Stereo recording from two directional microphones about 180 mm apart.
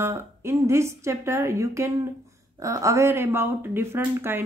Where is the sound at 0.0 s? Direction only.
15° right (ahead or behind).